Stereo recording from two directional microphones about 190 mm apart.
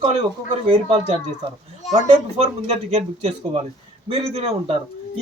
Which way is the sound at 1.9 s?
35° right (ahead or behind).